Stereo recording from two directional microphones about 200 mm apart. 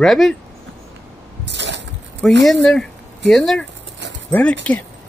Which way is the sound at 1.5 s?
60° right (ahead or behind).